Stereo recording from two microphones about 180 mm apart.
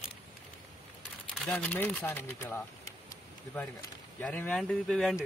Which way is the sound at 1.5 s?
5° left (ahead or behind).